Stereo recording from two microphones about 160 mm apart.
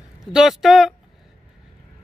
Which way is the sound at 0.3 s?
Centre (ahead or behind).